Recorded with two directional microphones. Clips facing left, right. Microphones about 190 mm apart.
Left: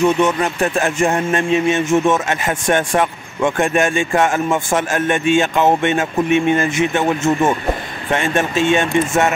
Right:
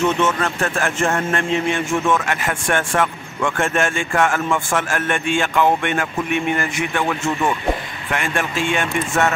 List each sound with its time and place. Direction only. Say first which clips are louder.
0.0 s speech: left 4 dB; 15° left (ahead or behind)